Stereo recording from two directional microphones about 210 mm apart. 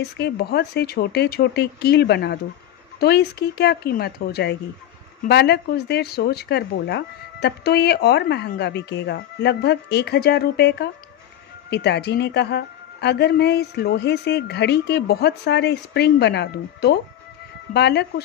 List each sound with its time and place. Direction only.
0.0 s speech: 50° left (ahead or behind)